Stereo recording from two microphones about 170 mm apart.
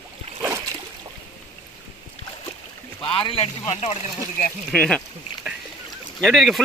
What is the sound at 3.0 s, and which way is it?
Speech, 30° left (ahead or behind).